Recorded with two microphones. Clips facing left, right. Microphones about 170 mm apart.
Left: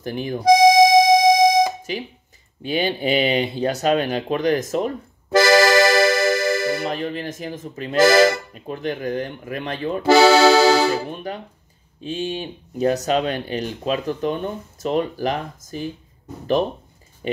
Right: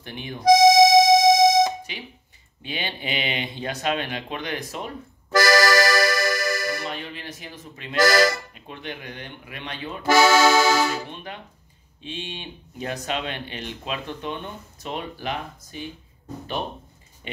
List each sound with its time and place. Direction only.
0.0 s speech: 40° left (ahead or behind)
0.4 s harmonica: 10° left (ahead or behind)
1.9 s speech: 40° left (ahead or behind)
5.3 s music: 25° left (ahead or behind)
6.9 s speech: 40° left (ahead or behind)
8.0 s speech: 25° left (ahead or behind)
8.5 s speech: 40° left (ahead or behind)
10.0 s speech: 30° left (ahead or behind)